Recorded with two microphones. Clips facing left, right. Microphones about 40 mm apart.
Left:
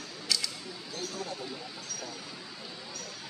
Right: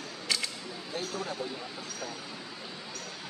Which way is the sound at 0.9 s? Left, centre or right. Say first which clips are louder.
Right 3 dB; right.